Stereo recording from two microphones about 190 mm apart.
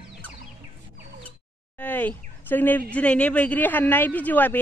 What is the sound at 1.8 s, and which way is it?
Speech, 10° left (ahead or behind).